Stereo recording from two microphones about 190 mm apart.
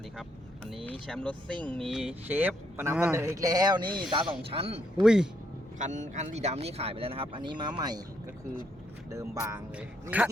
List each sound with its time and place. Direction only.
1.0 s a man's voice: 5° left (ahead or behind); by 5.0 s 30° right (ahead or behind)
5.0 s speech: 5° right (ahead or behind)
5.8 s speech: 40° right (ahead or behind); by 8.0 s 20° right (ahead or behind)
9.0 s a man's voice: 15° right (ahead or behind)